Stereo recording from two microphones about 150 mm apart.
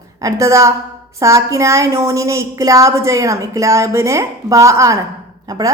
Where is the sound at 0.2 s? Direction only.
20° right (ahead or behind).